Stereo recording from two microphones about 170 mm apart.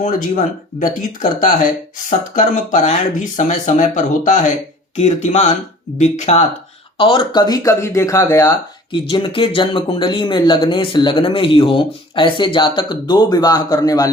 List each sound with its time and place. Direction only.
0.0 s speech: 55° left (ahead or behind)
7.0 s speech: 30° left (ahead or behind)
9.0 s speech: 30° left (ahead or behind)